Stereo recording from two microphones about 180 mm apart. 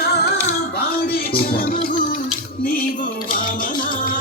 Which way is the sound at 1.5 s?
55° left (ahead or behind).